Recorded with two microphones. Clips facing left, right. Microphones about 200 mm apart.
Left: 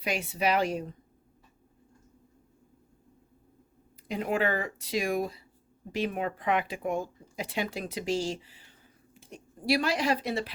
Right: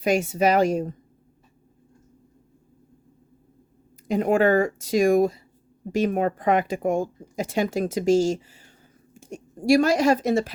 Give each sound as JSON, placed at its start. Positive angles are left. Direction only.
{"t": 0.0, "sound": "speech", "side_deg": -45}
{"t": 4.1, "sound": "a woman's voice", "side_deg": -45}